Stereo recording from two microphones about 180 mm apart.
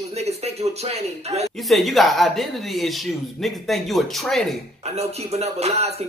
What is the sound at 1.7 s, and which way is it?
Speech, centre (ahead or behind).